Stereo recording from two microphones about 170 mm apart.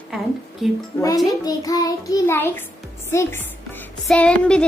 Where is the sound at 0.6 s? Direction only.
Centre (ahead or behind).